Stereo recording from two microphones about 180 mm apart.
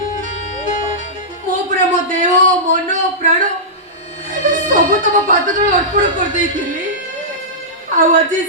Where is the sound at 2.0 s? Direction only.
45° right (ahead or behind).